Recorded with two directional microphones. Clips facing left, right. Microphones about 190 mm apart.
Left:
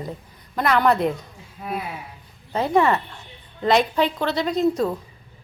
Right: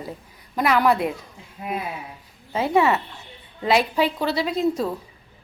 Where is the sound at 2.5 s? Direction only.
5° right (ahead or behind).